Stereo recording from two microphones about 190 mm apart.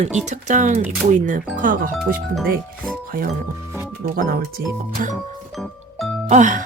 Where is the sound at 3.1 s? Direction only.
50° right (ahead or behind).